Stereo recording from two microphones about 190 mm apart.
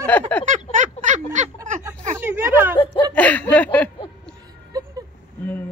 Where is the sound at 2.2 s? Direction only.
10° right (ahead or behind).